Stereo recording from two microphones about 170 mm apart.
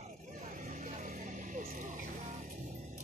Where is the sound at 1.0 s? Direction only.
45° right (ahead or behind).